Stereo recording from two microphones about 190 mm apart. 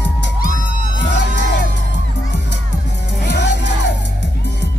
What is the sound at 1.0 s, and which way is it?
Music, 65° left (ahead or behind).